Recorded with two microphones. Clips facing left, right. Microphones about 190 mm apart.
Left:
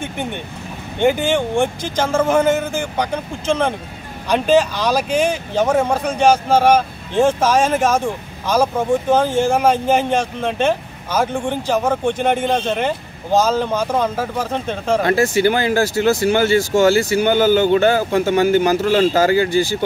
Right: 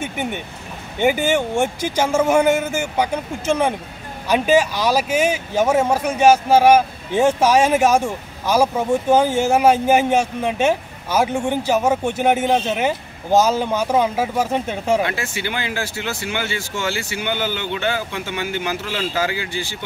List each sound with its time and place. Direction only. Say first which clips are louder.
0.0 s vehicle: even; 10° right (ahead or behind)
0.9 s speech: left 1 dB; 10° right (ahead or behind)
15.0 s speech: left 11 dB; 40° left (ahead or behind)